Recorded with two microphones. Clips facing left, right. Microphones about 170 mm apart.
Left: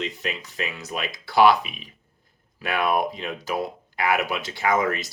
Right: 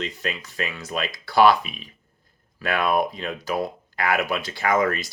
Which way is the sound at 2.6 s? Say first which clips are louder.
Right 1 dB; 20° left (ahead or behind).